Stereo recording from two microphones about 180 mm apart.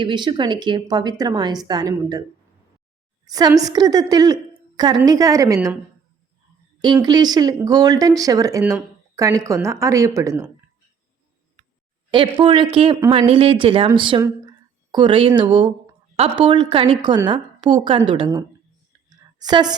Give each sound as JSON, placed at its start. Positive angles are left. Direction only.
{"t": 0.0, "sound": "speech", "side_deg": -25}
{"t": 3.2, "sound": "speech", "side_deg": -20}
{"t": 6.8, "sound": "speech", "side_deg": -25}
{"t": 12.1, "sound": "a woman's voice", "side_deg": -25}
{"t": 19.1, "sound": "clicking", "side_deg": -20}